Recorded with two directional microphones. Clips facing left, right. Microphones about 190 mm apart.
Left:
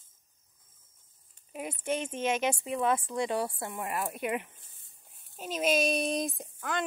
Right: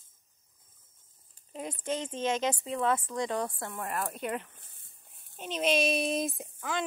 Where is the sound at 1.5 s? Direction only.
10° left (ahead or behind).